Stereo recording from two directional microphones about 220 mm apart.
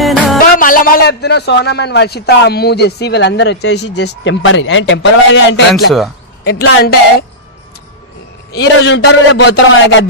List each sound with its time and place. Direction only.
0.0 s music: centre (ahead or behind)
0.5 s a man's voice: 40° left (ahead or behind)
8.5 s a man's voice: 55° left (ahead or behind)
9.5 s music: 65° left (ahead or behind)